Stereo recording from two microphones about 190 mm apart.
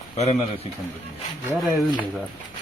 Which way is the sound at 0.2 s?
35° left (ahead or behind).